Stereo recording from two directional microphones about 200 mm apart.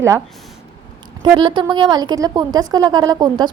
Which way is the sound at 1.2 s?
20° right (ahead or behind).